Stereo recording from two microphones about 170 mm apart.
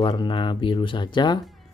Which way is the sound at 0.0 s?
25° left (ahead or behind).